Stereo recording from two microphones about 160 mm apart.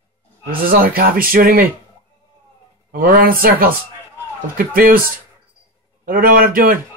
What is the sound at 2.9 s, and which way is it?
Speech, 65° right (ahead or behind).